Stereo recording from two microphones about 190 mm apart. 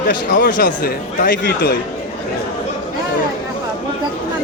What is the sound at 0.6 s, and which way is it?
Speech, 50° left (ahead or behind).